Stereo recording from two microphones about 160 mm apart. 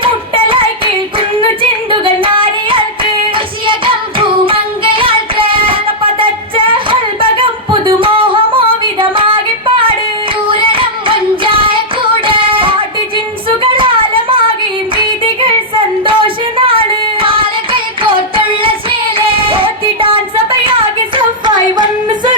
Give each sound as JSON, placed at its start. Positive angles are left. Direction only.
{"t": 0.0, "sound": "child singing", "side_deg": -35}
{"t": 1.9, "sound": "singing", "side_deg": -30}
{"t": 10.4, "sound": "child singing", "side_deg": -30}
{"t": 12.2, "sound": "a sound", "side_deg": -30}
{"t": 16.0, "sound": "a sound", "side_deg": -30}
{"t": 17.2, "sound": "singing", "side_deg": -35}